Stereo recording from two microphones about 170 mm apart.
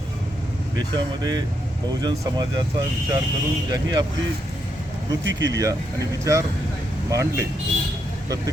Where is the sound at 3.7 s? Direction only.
25° right (ahead or behind).